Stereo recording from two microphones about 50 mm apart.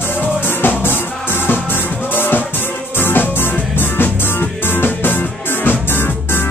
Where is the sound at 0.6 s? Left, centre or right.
Left.